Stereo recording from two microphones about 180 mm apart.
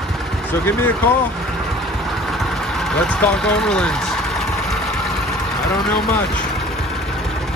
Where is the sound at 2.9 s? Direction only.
5° left (ahead or behind).